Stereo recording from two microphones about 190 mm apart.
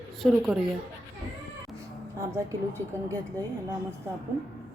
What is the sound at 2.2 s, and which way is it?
Speech, 15° right (ahead or behind).